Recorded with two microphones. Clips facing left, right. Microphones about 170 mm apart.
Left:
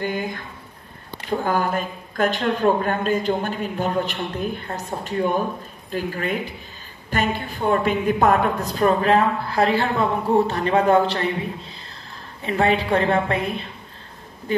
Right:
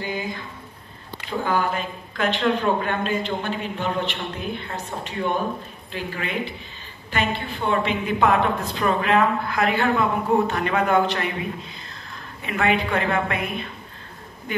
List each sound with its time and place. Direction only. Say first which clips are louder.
0.0 s a man's voice: left 3 dB; 55° left (ahead or behind)
1.4 s a man's voice: even; 45° left (ahead or behind)
12.4 s a woman's voice: left 3 dB; 30° left (ahead or behind)